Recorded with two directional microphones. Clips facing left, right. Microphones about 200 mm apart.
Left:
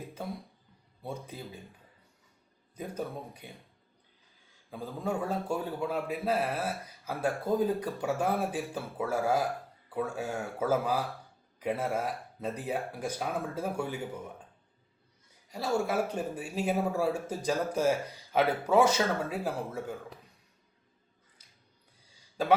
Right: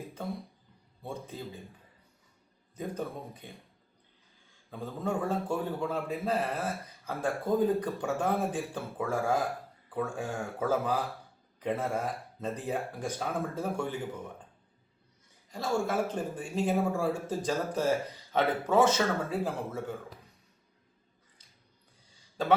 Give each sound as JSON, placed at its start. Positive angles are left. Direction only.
{"t": 2.7, "sound": "speech", "side_deg": 10}
{"t": 4.7, "sound": "speech", "side_deg": 10}
{"t": 15.4, "sound": "speech", "side_deg": 10}